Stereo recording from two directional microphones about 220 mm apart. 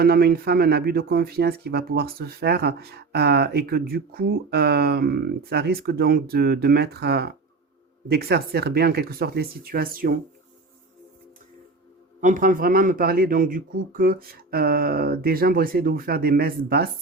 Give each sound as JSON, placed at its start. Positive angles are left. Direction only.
{"t": 0.0, "sound": "speech", "side_deg": -45}
{"t": 12.2, "sound": "speech", "side_deg": -35}